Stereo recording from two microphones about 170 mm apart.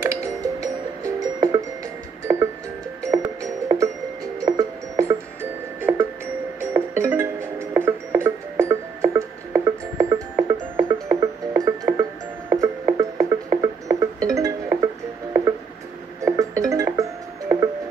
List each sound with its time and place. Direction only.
0.0 s music: 20° right (ahead or behind)
16.2 s music: 20° right (ahead or behind)